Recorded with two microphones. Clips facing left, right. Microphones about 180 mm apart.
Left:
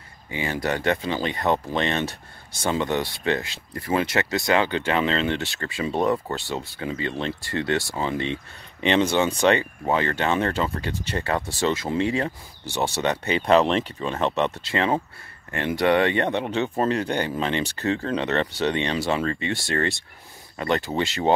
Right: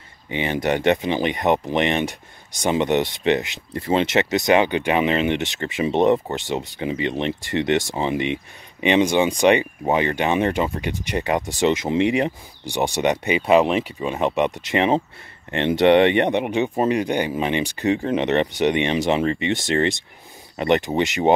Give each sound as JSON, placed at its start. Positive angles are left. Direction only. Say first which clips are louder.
{"t": 0.3, "sound": "speech", "louder": "right 4 dB", "side_deg": -20}